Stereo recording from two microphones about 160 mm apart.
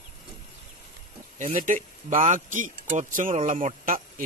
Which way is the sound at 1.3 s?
50° right (ahead or behind).